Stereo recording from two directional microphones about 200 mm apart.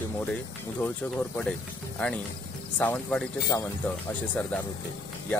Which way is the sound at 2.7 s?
5° left (ahead or behind).